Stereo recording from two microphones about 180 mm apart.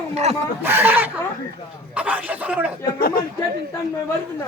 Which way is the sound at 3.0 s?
55° left (ahead or behind).